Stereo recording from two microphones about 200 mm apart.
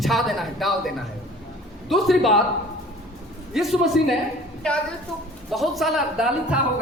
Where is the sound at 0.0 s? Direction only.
Centre (ahead or behind).